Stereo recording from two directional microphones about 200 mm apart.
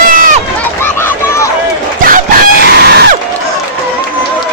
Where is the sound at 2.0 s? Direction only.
45° right (ahead or behind).